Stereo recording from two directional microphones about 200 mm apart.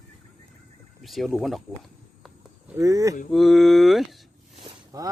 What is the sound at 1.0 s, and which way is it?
Speech, centre (ahead or behind).